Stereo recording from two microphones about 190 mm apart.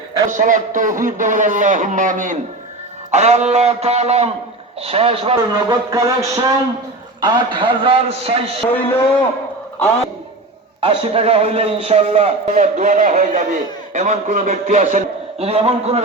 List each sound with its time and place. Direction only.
0.3 s a man's voice: 45° right (ahead or behind)
5.6 s a man's voice: 15° right (ahead or behind); by 8.4 s 30° right (ahead or behind)
8.7 s a man's voice: 10° left (ahead or behind)
10.8 s a man's voice: 30° right (ahead or behind)